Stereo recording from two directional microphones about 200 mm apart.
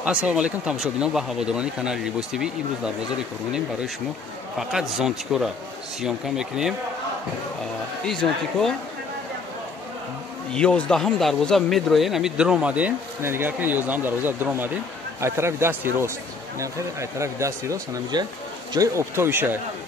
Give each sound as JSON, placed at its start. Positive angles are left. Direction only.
{"t": 0.0, "sound": "speech", "side_deg": -5}
{"t": 8.1, "sound": "speech", "side_deg": 0}
{"t": 10.5, "sound": "speech", "side_deg": 5}